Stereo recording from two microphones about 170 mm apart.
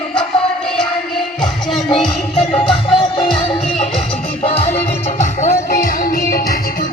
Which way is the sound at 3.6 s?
40° left (ahead or behind).